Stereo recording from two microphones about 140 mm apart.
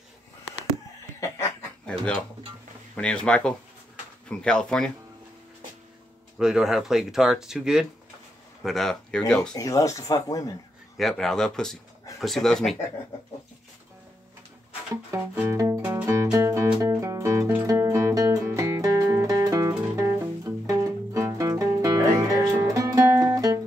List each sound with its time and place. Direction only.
3.0 s speech: 5° left (ahead or behind)
6.3 s speech: 5° right (ahead or behind)
9.6 s speech: 25° left (ahead or behind)
11.0 s speech: centre (ahead or behind)
15.3 s music: 20° right (ahead or behind)